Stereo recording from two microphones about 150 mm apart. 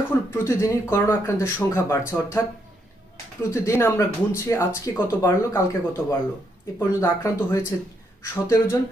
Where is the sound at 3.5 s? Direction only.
20° left (ahead or behind).